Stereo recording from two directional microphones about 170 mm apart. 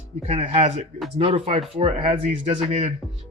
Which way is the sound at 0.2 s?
40° right (ahead or behind).